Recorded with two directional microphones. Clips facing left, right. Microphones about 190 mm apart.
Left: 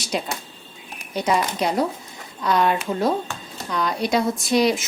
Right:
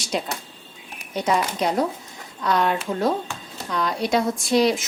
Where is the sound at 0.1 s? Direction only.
5° left (ahead or behind).